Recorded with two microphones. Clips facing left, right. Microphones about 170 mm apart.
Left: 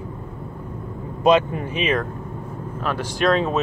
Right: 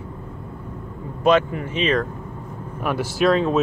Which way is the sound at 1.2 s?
15° left (ahead or behind).